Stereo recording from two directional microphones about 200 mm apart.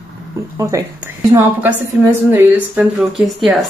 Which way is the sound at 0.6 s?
15° right (ahead or behind).